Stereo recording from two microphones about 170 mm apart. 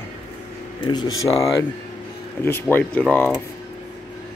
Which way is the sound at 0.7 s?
25° left (ahead or behind).